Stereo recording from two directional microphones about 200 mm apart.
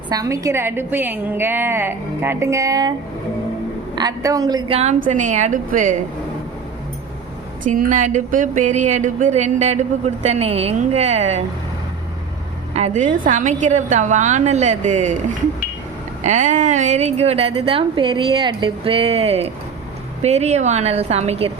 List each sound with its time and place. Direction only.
0.1 s a woman's voice: 15° right (ahead or behind)
3.9 s a woman's voice: 20° right (ahead or behind)
4.8 s a woman's voice: 40° right (ahead or behind)
7.6 s a woman's voice: 40° right (ahead or behind)
12.7 s a woman's voice: 35° right (ahead or behind)
16.2 s a woman's voice: 35° right (ahead or behind)